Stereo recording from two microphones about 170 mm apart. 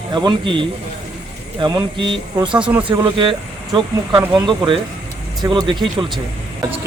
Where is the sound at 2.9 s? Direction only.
30° right (ahead or behind).